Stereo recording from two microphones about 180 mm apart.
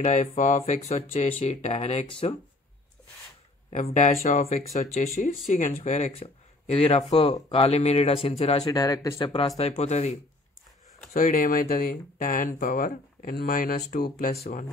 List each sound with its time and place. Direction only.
0.0 s speech: 40° left (ahead or behind)
3.7 s speech: 40° left (ahead or behind)
8.6 s speech: 20° left (ahead or behind)
9.6 s speech: 35° left (ahead or behind)
11.1 s speech: 50° left (ahead or behind)
14.3 s speech: 40° left (ahead or behind)